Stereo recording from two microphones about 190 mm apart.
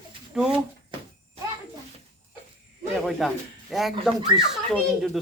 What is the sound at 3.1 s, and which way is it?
Speech, centre (ahead or behind).